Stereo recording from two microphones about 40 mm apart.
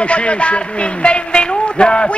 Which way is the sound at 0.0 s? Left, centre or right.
Left.